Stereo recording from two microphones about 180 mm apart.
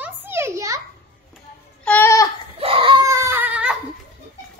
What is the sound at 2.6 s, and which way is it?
Crying, 30° right (ahead or behind).